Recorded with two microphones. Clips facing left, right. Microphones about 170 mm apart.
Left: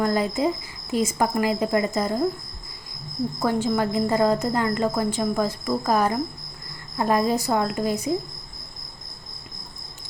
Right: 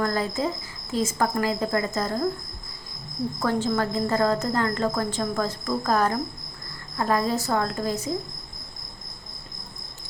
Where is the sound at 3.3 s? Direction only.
10° left (ahead or behind).